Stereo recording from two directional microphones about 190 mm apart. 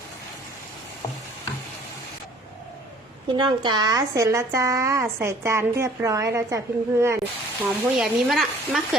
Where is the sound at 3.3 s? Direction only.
25° right (ahead or behind).